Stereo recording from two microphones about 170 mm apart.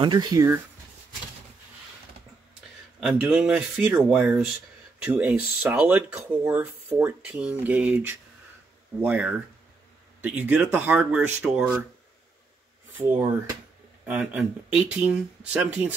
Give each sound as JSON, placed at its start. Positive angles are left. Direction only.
{"t": 0.0, "sound": "speech", "side_deg": -25}
{"t": 3.0, "sound": "speech", "side_deg": -5}
{"t": 14.0, "sound": "speech", "side_deg": -5}